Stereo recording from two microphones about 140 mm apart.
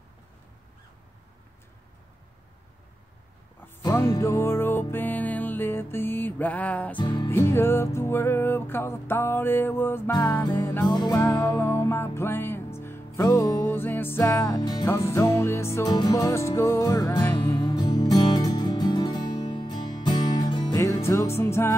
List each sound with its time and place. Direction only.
4.2 s music: 20° left (ahead or behind)
7.0 s music: 35° left (ahead or behind)
7.2 s music: 20° left (ahead or behind)
10.9 s music: 30° left (ahead or behind)
17.6 s music: 30° left (ahead or behind)